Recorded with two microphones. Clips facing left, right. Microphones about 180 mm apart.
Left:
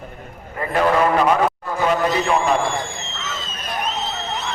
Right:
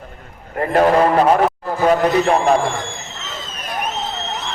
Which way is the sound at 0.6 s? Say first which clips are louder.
Right 4 dB; 45° right (ahead or behind).